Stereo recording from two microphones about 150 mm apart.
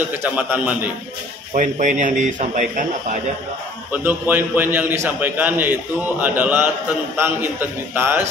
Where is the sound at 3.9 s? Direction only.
10° right (ahead or behind).